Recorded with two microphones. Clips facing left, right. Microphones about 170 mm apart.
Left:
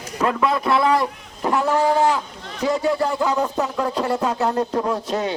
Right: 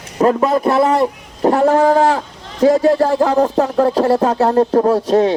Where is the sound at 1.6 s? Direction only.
55° right (ahead or behind).